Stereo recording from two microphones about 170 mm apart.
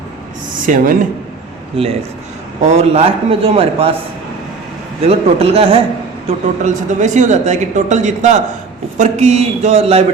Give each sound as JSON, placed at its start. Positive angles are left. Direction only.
{"t": 0.6, "sound": "speech", "side_deg": -55}
{"t": 2.6, "sound": "a man's voice", "side_deg": -40}
{"t": 5.0, "sound": "a man's voice", "side_deg": -35}
{"t": 6.2, "sound": "a man's voice", "side_deg": -45}